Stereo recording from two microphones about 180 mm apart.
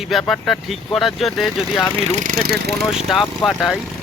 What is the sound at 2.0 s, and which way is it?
Speech, 40° right (ahead or behind).